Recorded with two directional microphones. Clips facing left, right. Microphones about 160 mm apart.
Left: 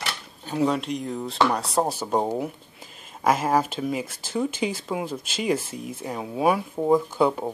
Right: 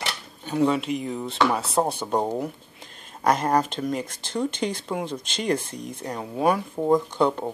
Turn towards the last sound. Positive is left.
turn(degrees=5)  # may be behind; listen again after turning